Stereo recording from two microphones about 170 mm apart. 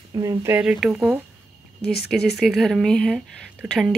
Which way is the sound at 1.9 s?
70° left (ahead or behind).